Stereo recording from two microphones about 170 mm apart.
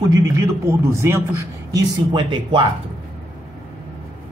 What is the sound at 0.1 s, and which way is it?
A man's voice, 20° right (ahead or behind).